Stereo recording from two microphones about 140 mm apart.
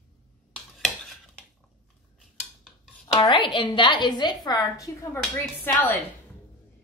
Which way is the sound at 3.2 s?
35° left (ahead or behind).